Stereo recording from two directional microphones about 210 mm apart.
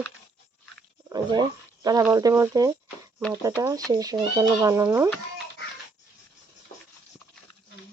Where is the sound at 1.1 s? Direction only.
20° right (ahead or behind).